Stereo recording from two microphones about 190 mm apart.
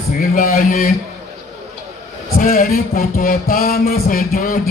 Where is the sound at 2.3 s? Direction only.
50° left (ahead or behind).